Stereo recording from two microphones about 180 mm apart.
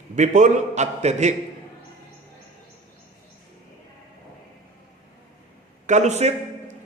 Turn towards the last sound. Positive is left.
turn(degrees=-40)  # may be behind; listen again after turning